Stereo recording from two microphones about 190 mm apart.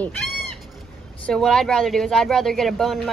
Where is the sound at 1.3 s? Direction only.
Centre (ahead or behind).